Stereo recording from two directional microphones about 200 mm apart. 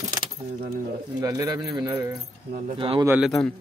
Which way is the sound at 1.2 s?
15° right (ahead or behind).